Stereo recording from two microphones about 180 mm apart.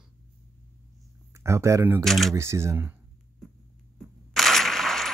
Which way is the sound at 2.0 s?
Centre (ahead or behind).